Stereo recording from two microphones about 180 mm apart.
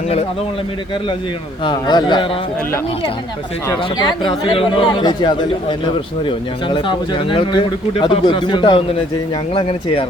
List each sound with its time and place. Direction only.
1.6 s speech: 25° left (ahead or behind)
3.7 s speech: 20° left (ahead or behind)